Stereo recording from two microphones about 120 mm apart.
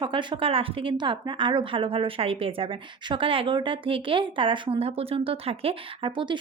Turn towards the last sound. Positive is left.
turn(degrees=-40)  # may be behind; listen again after turning